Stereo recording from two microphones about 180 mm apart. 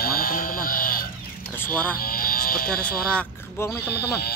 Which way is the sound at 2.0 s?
55° left (ahead or behind).